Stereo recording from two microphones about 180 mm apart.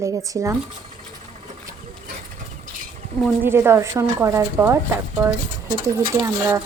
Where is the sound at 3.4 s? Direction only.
15° right (ahead or behind).